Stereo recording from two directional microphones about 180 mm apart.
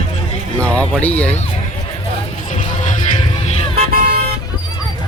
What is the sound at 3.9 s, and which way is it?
Vehicle, 55° right (ahead or behind).